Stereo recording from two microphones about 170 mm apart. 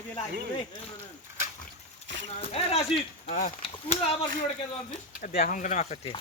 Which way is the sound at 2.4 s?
35° left (ahead or behind).